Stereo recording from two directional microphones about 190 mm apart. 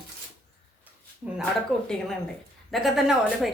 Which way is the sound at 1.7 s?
Centre (ahead or behind).